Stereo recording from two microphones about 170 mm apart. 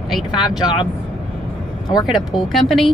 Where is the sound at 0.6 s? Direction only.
30° left (ahead or behind).